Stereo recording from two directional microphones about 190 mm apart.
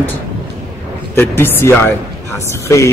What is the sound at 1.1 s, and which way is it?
Speech, 10° left (ahead or behind).